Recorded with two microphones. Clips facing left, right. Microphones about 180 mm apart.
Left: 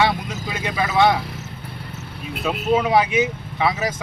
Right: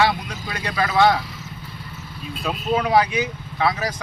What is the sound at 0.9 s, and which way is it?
Speech, 20° left (ahead or behind).